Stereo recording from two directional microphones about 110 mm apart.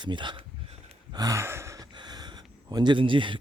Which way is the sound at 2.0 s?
40° right (ahead or behind).